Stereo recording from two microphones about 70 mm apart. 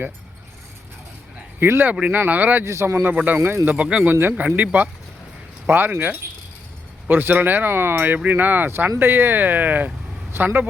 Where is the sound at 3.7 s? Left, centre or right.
Centre.